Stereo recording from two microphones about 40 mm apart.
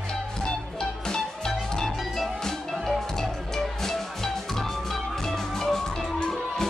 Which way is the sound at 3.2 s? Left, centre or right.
Centre.